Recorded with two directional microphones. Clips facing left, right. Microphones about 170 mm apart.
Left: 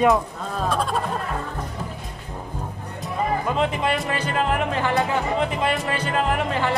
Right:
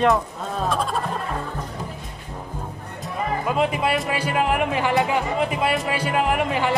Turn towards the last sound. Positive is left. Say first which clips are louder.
# right 1 dB
turn(degrees=-15)  # may be behind; listen again after turning